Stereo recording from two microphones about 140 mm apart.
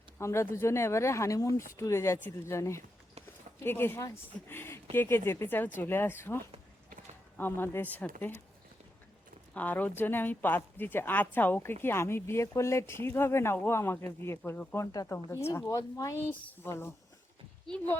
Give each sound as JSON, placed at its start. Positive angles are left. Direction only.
{"t": 0.2, "sound": "speech", "side_deg": 20}
{"t": 9.6, "sound": "speech", "side_deg": 10}